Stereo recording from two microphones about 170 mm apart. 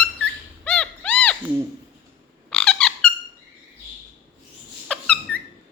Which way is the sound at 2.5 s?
5° left (ahead or behind).